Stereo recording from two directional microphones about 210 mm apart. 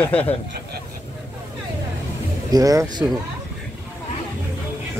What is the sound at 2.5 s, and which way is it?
Speech, 15° right (ahead or behind).